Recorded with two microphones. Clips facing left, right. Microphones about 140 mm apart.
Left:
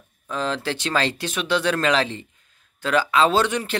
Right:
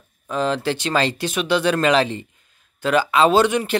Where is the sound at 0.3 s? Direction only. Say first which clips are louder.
Right 4 dB; 5° right (ahead or behind).